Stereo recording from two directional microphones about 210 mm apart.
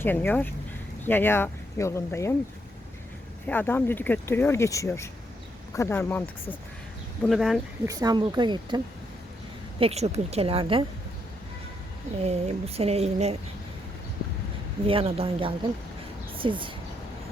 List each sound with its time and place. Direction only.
0.0 s speech: 10° left (ahead or behind)
3.4 s speech: 10° left (ahead or behind)
7.9 s speech: 20° right (ahead or behind)
9.8 s speech: 30° right (ahead or behind)
12.2 s speech: 30° right (ahead or behind)
14.8 s speech: 25° right (ahead or behind)